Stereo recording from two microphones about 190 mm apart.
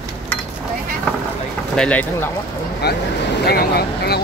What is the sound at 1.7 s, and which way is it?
Speech, 5° left (ahead or behind).